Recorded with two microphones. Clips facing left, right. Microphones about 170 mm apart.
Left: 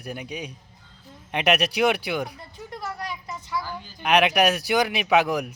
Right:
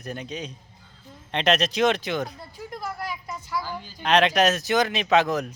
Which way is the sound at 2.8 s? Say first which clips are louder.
Even; centre (ahead or behind).